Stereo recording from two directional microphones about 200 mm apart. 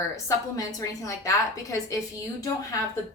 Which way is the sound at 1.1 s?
15° left (ahead or behind).